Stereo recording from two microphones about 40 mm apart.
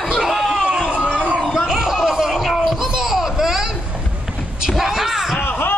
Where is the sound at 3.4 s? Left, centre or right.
Centre.